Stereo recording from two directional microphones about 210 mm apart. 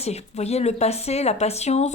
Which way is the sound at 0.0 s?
30° left (ahead or behind).